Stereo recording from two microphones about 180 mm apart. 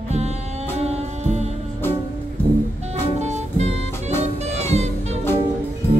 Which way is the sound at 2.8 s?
40° right (ahead or behind).